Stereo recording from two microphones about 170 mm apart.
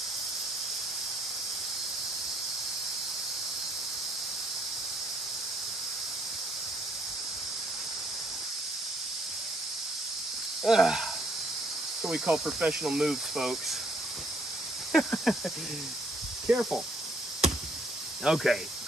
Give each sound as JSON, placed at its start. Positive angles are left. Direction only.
{"t": 10.6, "sound": "speech", "side_deg": 0}
{"t": 14.9, "sound": "speech", "side_deg": 0}
{"t": 16.4, "sound": "speech", "side_deg": -10}
{"t": 18.2, "sound": "speech", "side_deg": 0}